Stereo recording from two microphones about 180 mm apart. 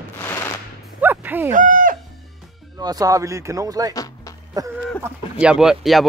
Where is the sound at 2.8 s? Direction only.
20° right (ahead or behind).